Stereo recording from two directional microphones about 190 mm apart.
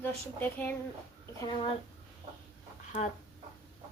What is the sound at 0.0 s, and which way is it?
Speech, 10° left (ahead or behind).